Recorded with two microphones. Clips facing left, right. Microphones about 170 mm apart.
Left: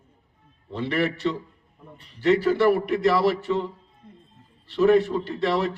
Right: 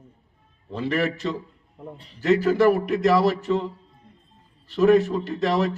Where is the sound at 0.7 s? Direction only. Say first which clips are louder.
Right 1 dB; 40° right (ahead or behind).